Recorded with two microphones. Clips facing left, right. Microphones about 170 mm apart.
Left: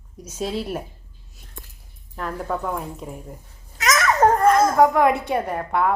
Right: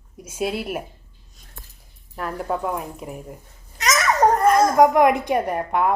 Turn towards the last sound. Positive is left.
turn(degrees=-15)  # may be behind; listen again after turning